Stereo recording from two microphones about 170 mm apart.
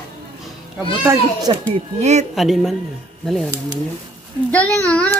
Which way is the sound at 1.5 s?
25° right (ahead or behind).